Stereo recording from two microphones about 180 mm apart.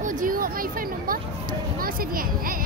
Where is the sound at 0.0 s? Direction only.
45° right (ahead or behind).